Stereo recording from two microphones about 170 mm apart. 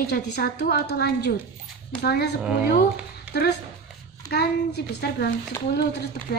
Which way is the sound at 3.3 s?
75° left (ahead or behind).